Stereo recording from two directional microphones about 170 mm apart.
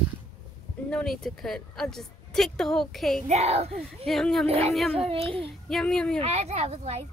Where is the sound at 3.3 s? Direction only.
40° right (ahead or behind).